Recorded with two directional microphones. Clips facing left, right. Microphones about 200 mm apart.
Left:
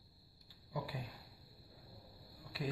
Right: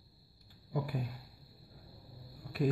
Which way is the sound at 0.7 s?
50° right (ahead or behind).